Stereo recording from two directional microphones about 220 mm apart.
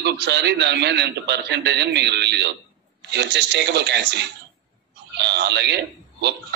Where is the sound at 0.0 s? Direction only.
50° right (ahead or behind).